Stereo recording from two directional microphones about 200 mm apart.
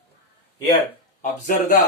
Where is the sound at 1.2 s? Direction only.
40° left (ahead or behind).